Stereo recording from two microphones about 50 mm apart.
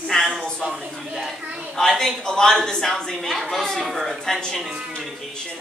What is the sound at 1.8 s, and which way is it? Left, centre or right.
Speech, centre.